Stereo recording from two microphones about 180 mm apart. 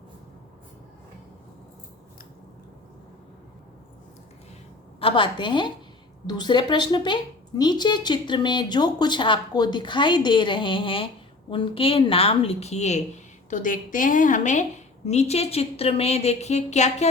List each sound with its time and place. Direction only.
4.9 s a woman's voice: 30° left (ahead or behind)